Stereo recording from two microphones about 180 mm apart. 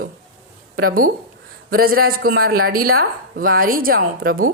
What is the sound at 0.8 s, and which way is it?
A woman's voice, 55° right (ahead or behind).